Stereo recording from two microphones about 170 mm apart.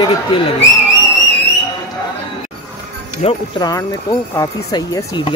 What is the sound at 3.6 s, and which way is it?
Speech, 20° left (ahead or behind).